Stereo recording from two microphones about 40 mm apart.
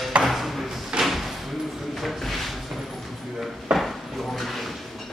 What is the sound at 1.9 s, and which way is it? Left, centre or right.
Drawer open or close, centre.